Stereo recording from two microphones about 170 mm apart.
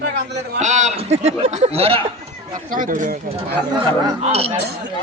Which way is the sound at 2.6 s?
50° right (ahead or behind).